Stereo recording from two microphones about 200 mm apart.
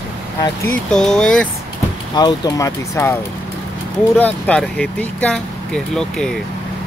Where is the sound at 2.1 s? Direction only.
20° left (ahead or behind).